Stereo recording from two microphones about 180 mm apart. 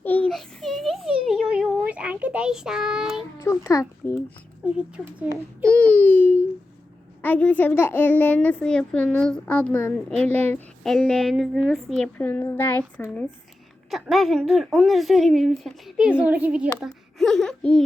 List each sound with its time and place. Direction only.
0.0 s a sound: 10° left (ahead or behind)
3.4 s a woman's voice: 15° left (ahead or behind)
4.6 s speech: 5° right (ahead or behind)
5.6 s baby cry: 10° left (ahead or behind)
7.2 s a woman's voice: 10° left (ahead or behind)